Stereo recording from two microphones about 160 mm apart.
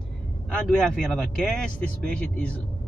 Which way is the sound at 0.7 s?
Centre (ahead or behind).